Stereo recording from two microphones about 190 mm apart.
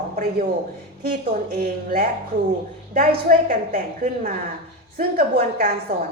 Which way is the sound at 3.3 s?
45° right (ahead or behind).